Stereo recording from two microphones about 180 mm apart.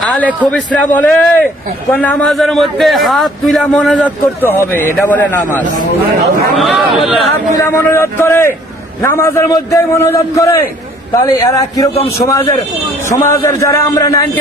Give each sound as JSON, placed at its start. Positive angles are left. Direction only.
{"t": 0.0, "sound": "a sound", "side_deg": 0}
{"t": 0.3, "sound": "a man's voice", "side_deg": 5}
{"t": 7.9, "sound": "a man's voice", "side_deg": 15}